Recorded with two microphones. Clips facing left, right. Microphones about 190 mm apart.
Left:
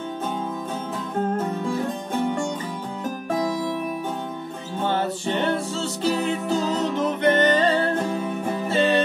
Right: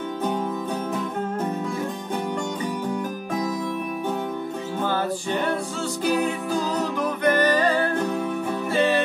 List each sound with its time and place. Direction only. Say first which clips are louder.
4.8 s music: left 2 dB; 25° left (ahead or behind)